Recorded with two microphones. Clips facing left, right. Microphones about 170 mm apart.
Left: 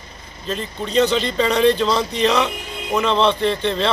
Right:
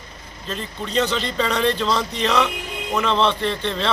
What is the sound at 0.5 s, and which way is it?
Speech, 5° left (ahead or behind).